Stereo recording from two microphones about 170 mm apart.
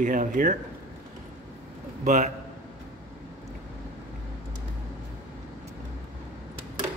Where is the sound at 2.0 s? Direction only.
50° right (ahead or behind).